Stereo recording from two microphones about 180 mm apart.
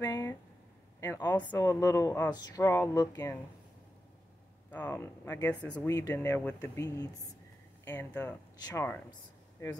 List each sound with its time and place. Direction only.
0.0 s a sound: 20° left (ahead or behind)
1.0 s speech: 20° left (ahead or behind)
4.6 s speech: 10° left (ahead or behind)
5.9 s speech: 20° left (ahead or behind)